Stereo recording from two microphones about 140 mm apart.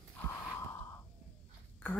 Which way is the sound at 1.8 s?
15° left (ahead or behind).